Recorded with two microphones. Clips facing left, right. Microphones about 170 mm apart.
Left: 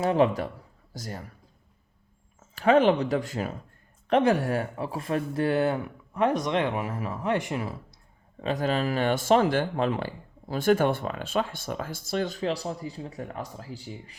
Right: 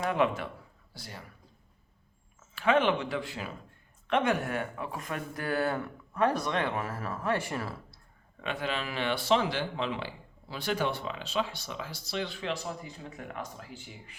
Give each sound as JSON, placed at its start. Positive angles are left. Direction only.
{"t": 0.0, "sound": "speech", "side_deg": 35}
{"t": 2.4, "sound": "speech", "side_deg": 40}
{"t": 8.4, "sound": "speech", "side_deg": 40}